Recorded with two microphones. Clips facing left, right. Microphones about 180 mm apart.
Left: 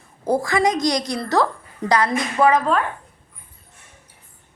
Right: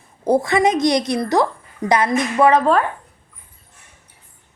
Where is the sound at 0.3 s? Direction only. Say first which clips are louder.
Right 3 dB; 25° right (ahead or behind).